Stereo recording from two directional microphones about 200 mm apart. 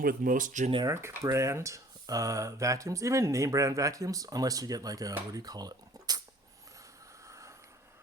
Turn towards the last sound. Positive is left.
turn(degrees=-15)  # may be behind; listen again after turning